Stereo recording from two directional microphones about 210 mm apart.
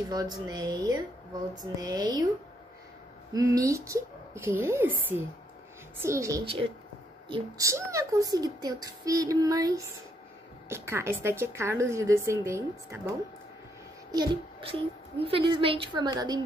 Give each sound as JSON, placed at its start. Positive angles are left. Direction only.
{"t": 0.1, "sound": "speech", "side_deg": -20}
{"t": 3.3, "sound": "speech", "side_deg": -15}
{"t": 6.4, "sound": "speech", "side_deg": -25}
{"t": 14.1, "sound": "a child's voice", "side_deg": -20}